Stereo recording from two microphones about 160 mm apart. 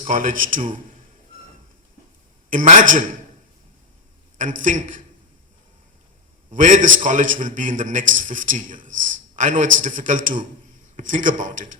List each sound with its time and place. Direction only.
0.0 s a man's voice: 55° right (ahead or behind)
2.5 s a man's voice: 55° right (ahead or behind)
4.4 s a man's voice: 50° right (ahead or behind)
6.5 s a man's voice: 55° right (ahead or behind)